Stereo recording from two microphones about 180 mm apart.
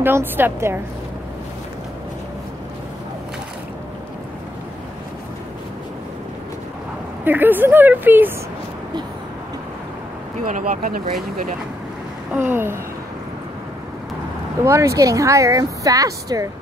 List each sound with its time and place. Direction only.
0.0 s speech: 10° right (ahead or behind)
7.2 s speech: 10° right (ahead or behind)
10.4 s speech: 45° right (ahead or behind)
12.3 s speech: 10° right (ahead or behind)
14.6 s speech: 15° right (ahead or behind)